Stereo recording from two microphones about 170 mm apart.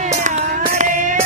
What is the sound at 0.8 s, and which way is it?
Music, 50° right (ahead or behind).